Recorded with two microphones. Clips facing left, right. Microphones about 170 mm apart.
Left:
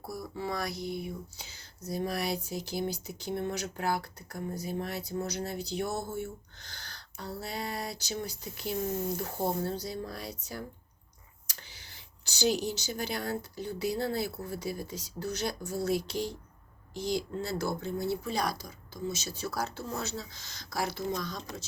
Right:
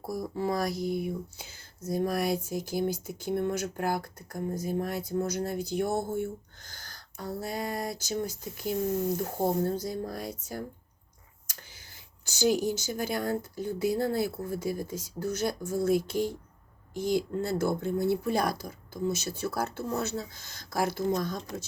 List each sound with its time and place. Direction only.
0.0 s speech: 45° right (ahead or behind)
12.2 s speech: 50° right (ahead or behind)